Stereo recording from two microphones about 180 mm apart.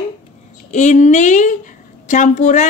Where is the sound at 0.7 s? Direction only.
40° left (ahead or behind).